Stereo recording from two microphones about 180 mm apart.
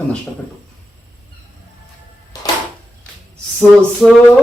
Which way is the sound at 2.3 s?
20° left (ahead or behind).